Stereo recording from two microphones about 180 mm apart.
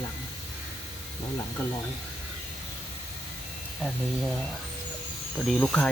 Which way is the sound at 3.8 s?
5° left (ahead or behind).